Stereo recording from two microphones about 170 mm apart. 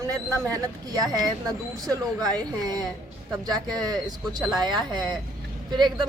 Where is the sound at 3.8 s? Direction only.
20° right (ahead or behind).